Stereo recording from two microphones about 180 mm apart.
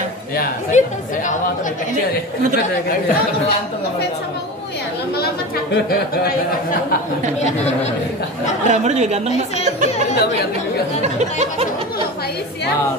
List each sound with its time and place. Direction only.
0.7 s speech: 40° left (ahead or behind)
8.6 s speech: 40° right (ahead or behind)
11.0 s a sound: 40° right (ahead or behind)